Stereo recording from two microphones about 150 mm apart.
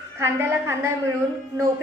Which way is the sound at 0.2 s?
15° right (ahead or behind).